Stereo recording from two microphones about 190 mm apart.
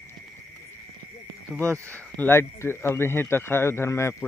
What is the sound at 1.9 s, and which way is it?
Speech, 10° left (ahead or behind).